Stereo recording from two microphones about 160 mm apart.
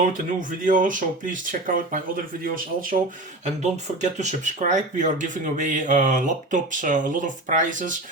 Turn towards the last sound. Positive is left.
turn(degrees=-55)  # may be behind; listen again after turning